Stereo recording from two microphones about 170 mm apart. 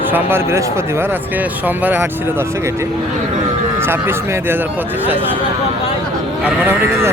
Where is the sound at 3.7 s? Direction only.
15° right (ahead or behind).